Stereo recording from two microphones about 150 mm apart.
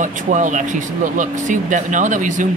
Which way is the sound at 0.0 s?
55° right (ahead or behind).